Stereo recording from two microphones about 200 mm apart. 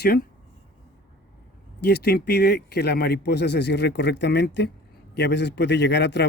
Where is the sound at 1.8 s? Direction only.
55° left (ahead or behind).